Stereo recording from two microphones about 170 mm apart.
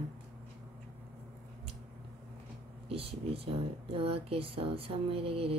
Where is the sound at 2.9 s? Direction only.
35° right (ahead or behind).